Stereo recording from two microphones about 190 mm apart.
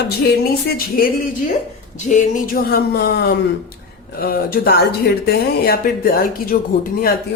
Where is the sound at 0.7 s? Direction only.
50° left (ahead or behind).